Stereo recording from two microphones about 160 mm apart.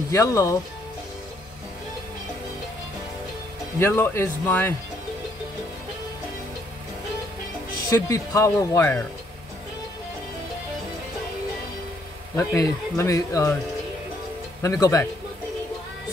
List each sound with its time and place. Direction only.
0.1 s speech: 20° left (ahead or behind)
3.8 s speech: 15° left (ahead or behind)
7.9 s speech: 20° left (ahead or behind)
12.4 s speech: 20° left (ahead or behind)
14.6 s speech: 20° left (ahead or behind)